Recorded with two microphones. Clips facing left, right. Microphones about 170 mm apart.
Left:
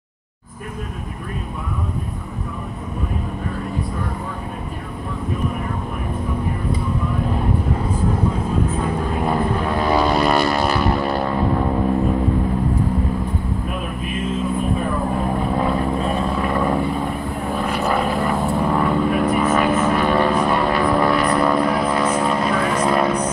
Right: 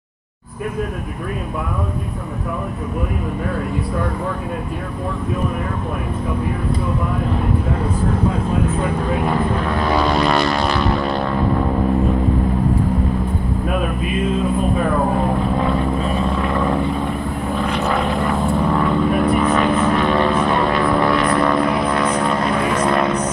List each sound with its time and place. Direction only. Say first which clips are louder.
9.9 s vehicle: even; 5° left (ahead or behind)
14.8 s vehicle: right 4 dB; 65° right (ahead or behind)
16.4 s vehicle: right 1 dB; 10° left (ahead or behind)